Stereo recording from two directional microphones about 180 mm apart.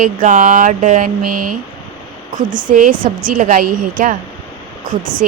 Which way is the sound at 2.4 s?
45° right (ahead or behind).